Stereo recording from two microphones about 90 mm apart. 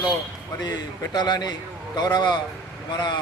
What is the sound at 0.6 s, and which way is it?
A man's voice, 50° left (ahead or behind).